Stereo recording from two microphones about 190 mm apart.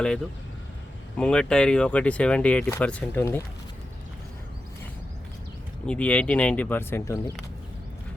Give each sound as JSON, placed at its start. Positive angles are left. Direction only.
{"t": 1.1, "sound": "speech", "side_deg": 5}
{"t": 5.8, "sound": "speech", "side_deg": 5}